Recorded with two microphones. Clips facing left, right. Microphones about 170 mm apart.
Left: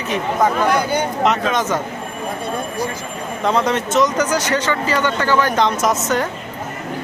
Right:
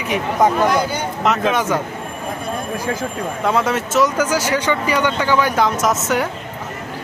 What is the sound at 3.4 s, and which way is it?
Speech, 5° right (ahead or behind).